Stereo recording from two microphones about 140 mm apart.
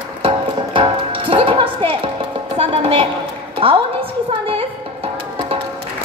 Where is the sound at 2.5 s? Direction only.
45° right (ahead or behind).